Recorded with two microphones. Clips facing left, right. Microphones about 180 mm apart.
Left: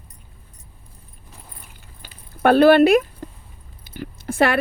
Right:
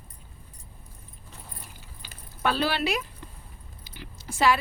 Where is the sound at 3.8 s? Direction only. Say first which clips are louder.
Left 12 dB; 55° left (ahead or behind).